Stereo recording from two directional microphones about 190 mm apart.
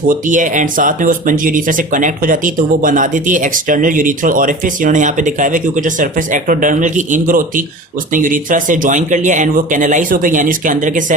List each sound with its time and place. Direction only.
0.1 s speech: 45° right (ahead or behind)